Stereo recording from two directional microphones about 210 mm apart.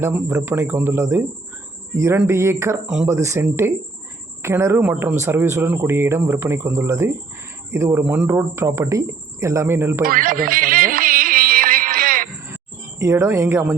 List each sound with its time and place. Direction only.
0.0 s a man's voice: 15° right (ahead or behind)
10.0 s music: 40° right (ahead or behind)
13.0 s a man's voice: 15° right (ahead or behind)